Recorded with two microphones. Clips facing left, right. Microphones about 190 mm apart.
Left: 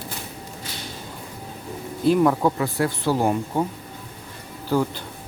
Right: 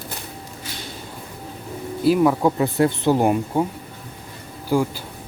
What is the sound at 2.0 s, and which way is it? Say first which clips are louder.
Speech: right 1 dB; 5° right (ahead or behind).